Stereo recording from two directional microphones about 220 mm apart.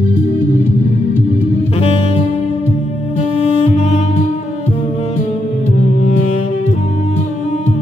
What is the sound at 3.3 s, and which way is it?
Music, 25° left (ahead or behind).